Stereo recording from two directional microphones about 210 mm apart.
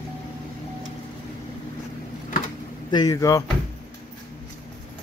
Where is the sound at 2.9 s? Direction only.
20° left (ahead or behind).